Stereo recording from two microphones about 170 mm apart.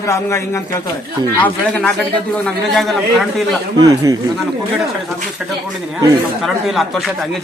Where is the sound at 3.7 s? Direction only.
20° right (ahead or behind).